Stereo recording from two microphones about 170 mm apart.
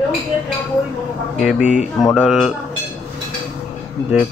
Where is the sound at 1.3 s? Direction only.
5° right (ahead or behind).